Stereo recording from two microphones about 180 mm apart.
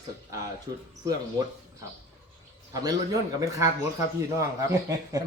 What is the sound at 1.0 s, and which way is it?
Speech, 20° right (ahead or behind).